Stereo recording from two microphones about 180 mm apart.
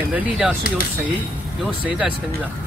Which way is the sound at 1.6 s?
5° right (ahead or behind).